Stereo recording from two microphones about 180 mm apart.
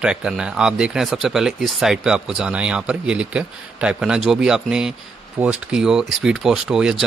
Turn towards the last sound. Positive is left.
turn(degrees=-5)  # may be behind; listen again after turning